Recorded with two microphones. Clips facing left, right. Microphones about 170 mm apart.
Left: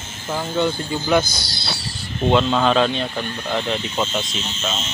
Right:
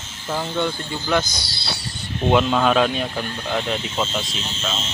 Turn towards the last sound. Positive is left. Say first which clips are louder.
# left 1 dB
turn(degrees=5)  # may be behind; listen again after turning